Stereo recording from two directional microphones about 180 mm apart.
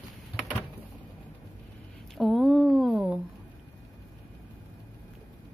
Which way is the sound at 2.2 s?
Centre (ahead or behind).